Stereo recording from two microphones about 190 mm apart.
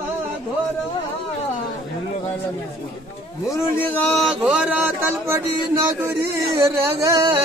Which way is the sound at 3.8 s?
5° left (ahead or behind).